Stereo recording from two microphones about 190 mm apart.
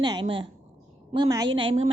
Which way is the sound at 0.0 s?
25° right (ahead or behind).